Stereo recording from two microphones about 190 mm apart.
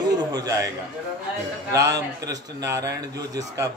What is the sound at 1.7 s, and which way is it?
A man's voice, 15° right (ahead or behind).